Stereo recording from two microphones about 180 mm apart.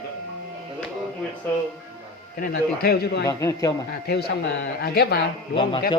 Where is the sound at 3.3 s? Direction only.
20° left (ahead or behind).